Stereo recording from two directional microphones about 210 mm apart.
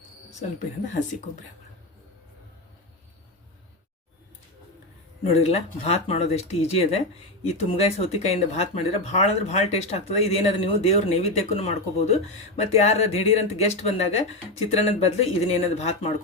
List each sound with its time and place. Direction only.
5.2 s speech: 30° left (ahead or behind)